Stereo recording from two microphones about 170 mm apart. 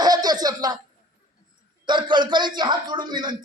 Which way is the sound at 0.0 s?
25° right (ahead or behind).